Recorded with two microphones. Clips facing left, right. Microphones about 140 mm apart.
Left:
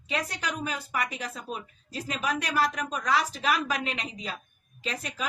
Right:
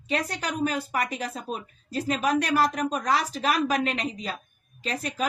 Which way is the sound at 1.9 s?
45° right (ahead or behind).